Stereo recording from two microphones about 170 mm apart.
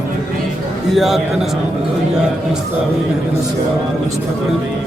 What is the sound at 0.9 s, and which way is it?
Speech, centre (ahead or behind).